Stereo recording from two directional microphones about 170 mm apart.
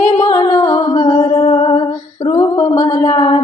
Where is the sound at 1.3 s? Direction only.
40° left (ahead or behind).